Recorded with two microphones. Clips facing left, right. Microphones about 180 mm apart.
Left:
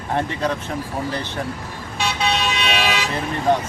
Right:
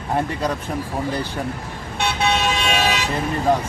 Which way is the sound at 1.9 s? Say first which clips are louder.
Right 1 dB; 55° right (ahead or behind).